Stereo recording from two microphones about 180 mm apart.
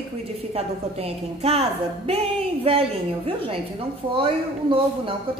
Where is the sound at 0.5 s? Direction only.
35° right (ahead or behind).